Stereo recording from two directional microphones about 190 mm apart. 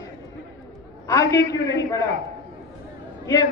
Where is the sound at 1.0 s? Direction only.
15° left (ahead or behind).